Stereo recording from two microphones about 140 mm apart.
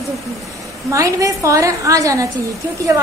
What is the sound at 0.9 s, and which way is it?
A woman's voice, 25° right (ahead or behind).